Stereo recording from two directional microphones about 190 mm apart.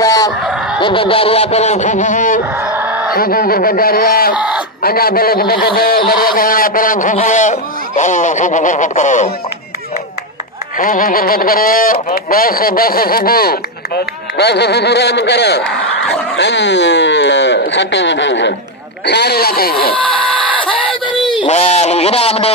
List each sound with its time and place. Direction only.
0.0 s honk: 15° left (ahead or behind)
0.7 s a man's voice: 25° left (ahead or behind); by 2.4 s 45° left (ahead or behind)
2.6 s a sound: 10° right (ahead or behind)
3.1 s speech: 50° left (ahead or behind)
10.8 s speech: 45° left (ahead or behind); by 18.5 s 70° left (ahead or behind)
19.0 s speech: 60° left (ahead or behind)
21.2 s a man's voice: 25° left (ahead or behind)